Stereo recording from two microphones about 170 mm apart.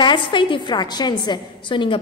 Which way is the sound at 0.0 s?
30° left (ahead or behind).